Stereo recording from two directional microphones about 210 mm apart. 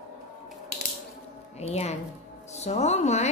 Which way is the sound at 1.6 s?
30° left (ahead or behind).